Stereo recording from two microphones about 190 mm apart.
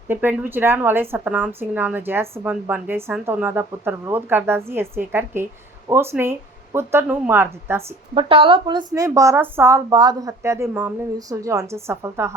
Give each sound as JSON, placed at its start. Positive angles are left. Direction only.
{"t": 0.1, "sound": "speech", "side_deg": -10}
{"t": 8.1, "sound": "speech", "side_deg": -30}